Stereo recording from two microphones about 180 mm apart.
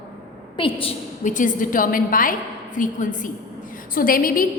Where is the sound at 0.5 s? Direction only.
30° left (ahead or behind).